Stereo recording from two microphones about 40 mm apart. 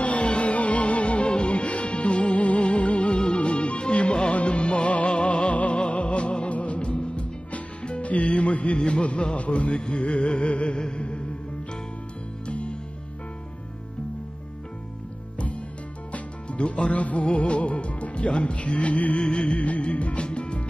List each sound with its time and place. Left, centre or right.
0.0 s music: left
12.4 s music: left
16.1 s music: left
19.2 s music: left